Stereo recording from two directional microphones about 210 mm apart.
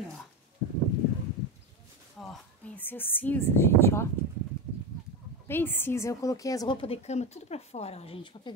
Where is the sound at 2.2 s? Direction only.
5° left (ahead or behind).